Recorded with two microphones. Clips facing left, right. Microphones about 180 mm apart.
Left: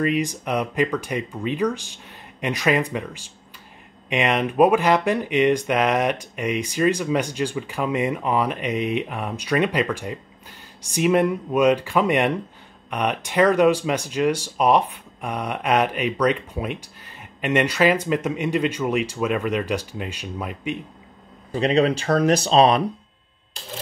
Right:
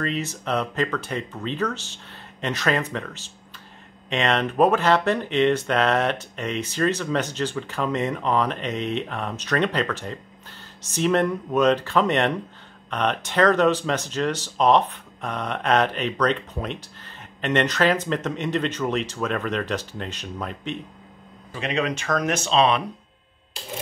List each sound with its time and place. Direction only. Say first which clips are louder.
0.0 s speech: left 5 dB; 15° left (ahead or behind)
21.5 s speech: left 7 dB; 35° left (ahead or behind)